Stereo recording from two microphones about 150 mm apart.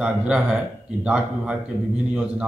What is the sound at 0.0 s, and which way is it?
Speech, 5° right (ahead or behind).